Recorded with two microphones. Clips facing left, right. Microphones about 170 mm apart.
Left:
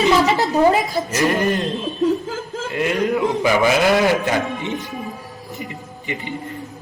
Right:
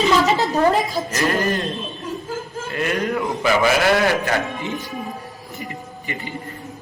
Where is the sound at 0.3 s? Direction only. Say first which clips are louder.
Left 2 dB; 10° left (ahead or behind).